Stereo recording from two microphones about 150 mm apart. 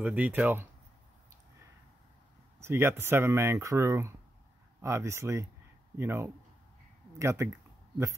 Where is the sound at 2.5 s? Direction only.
15° right (ahead or behind).